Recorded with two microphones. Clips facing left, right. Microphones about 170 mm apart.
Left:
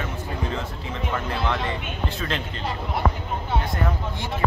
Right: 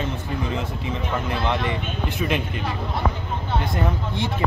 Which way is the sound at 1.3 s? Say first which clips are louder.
Right 3 dB; 15° right (ahead or behind).